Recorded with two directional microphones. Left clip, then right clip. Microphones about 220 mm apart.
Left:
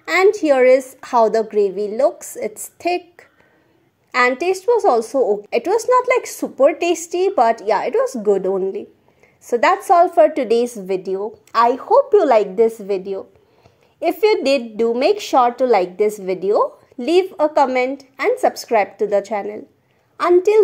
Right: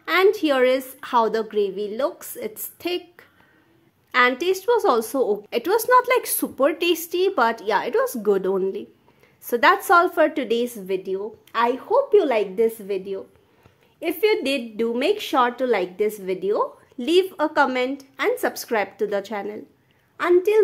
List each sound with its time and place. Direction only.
0.0 s a woman's voice: 5° left (ahead or behind)
5.0 s a woman's voice: 20° right (ahead or behind)
5.5 s a woman's voice: 5° right (ahead or behind)
9.8 s a woman's voice: 5° right (ahead or behind)